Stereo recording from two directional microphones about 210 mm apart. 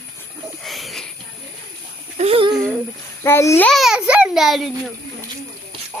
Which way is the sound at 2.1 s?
30° right (ahead or behind).